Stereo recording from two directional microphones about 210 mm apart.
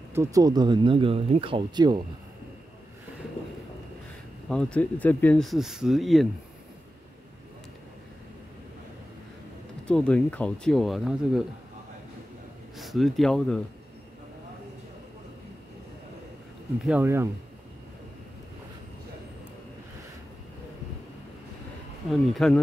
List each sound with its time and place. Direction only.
0.1 s speech: 15° right (ahead or behind)
4.5 s speech: 5° left (ahead or behind)
9.8 s speech: 5° left (ahead or behind)
12.7 s speech: centre (ahead or behind)
16.8 s speech: 10° right (ahead or behind)
22.1 s speech: centre (ahead or behind)